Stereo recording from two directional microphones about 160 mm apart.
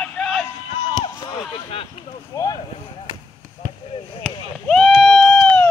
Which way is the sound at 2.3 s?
20° left (ahead or behind).